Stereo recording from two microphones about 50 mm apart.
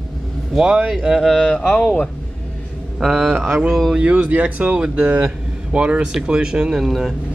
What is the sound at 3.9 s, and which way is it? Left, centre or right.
Speech, right.